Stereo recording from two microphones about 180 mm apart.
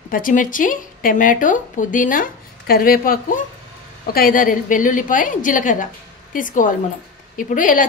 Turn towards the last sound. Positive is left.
turn(degrees=50)  # may be behind; listen again after turning